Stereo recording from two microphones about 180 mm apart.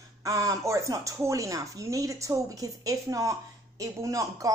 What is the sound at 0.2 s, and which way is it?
Speech, 20° right (ahead or behind).